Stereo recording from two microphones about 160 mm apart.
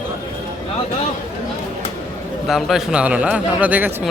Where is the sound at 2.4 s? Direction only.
Centre (ahead or behind).